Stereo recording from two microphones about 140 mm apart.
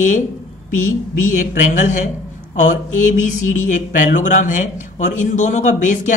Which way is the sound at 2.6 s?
65° left (ahead or behind).